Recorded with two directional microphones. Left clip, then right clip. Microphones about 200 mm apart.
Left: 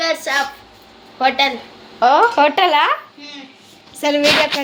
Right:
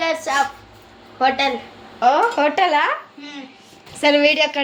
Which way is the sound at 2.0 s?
30° left (ahead or behind).